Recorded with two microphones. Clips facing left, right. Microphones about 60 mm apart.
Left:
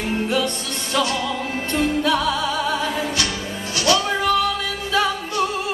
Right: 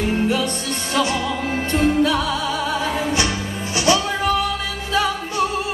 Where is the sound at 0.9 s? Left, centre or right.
Right.